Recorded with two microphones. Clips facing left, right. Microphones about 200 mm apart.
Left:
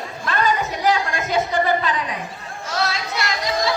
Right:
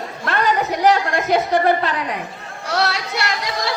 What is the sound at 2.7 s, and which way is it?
Chatter, 65° right (ahead or behind).